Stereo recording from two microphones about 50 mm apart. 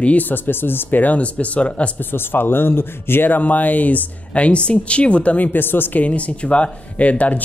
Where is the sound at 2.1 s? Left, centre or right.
Left.